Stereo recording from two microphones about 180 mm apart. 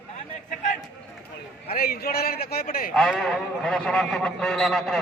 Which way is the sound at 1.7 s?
55° left (ahead or behind).